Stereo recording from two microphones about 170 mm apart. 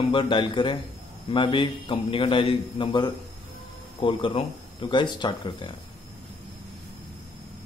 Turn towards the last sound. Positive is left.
turn(degrees=25)  # may be behind; listen again after turning